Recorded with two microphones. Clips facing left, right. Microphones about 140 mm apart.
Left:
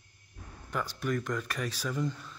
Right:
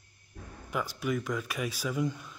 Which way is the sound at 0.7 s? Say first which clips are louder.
Right 1 dB; 10° right (ahead or behind).